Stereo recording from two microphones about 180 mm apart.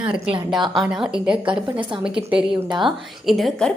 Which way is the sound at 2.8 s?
Centre (ahead or behind).